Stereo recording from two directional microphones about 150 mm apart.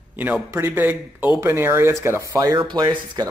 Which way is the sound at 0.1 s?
10° right (ahead or behind).